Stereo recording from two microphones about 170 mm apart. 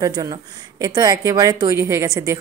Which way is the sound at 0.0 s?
20° right (ahead or behind).